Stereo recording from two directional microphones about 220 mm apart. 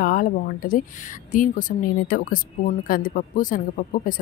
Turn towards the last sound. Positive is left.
turn(degrees=40)  # may be behind; listen again after turning